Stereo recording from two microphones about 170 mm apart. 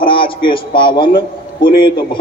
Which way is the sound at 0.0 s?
30° left (ahead or behind).